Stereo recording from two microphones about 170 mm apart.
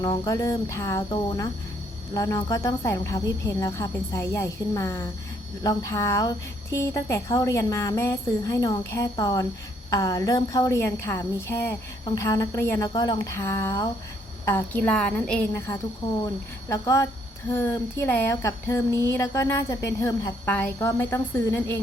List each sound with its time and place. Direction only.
0.0 s music: 20° left (ahead or behind)
2.1 s speech: 20° left (ahead or behind)
12.9 s music: 25° left (ahead or behind)
14.4 s speech: 10° left (ahead or behind)
16.2 s music: 20° left (ahead or behind)
17.5 s speech: 15° left (ahead or behind)